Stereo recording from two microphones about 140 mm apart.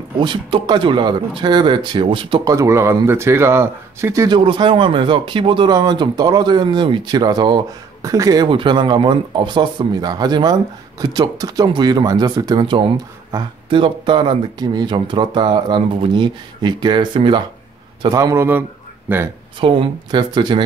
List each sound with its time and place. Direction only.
0.2 s speech: 35° right (ahead or behind)
2.4 s speech: 25° right (ahead or behind)
4.3 s speech: 35° right (ahead or behind)
8.5 s speech: 35° right (ahead or behind)
18.1 s speech: 20° right (ahead or behind)
19.6 s speech: 35° right (ahead or behind)